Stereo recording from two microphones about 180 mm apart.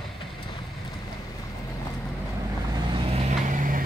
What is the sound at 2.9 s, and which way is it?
Vehicle, 35° right (ahead or behind).